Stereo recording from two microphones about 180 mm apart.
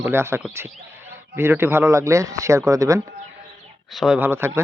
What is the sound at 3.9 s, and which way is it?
Speech, 5° right (ahead or behind).